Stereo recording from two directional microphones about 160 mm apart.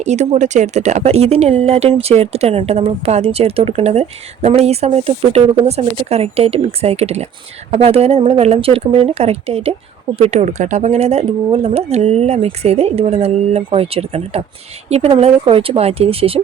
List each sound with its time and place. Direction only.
0.0 s speech: 45° right (ahead or behind)